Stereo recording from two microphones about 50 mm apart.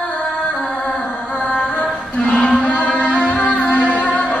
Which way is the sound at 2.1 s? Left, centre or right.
Left.